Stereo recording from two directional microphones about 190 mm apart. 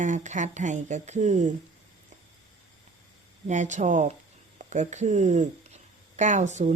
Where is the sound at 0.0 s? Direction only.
40° right (ahead or behind).